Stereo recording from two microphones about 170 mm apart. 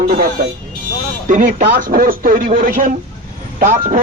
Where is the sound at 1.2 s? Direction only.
50° right (ahead or behind).